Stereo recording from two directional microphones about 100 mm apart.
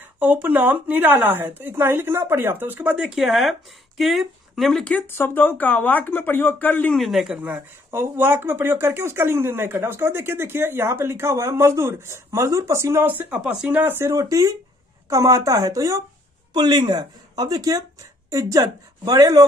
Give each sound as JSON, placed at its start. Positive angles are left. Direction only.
{"t": 0.0, "sound": "speech", "side_deg": -20}
{"t": 3.2, "sound": "speech", "side_deg": 0}
{"t": 4.8, "sound": "speech", "side_deg": 15}
{"t": 7.0, "sound": "speech", "side_deg": 0}
{"t": 8.2, "sound": "speech", "side_deg": -20}
{"t": 14.1, "sound": "speech", "side_deg": -35}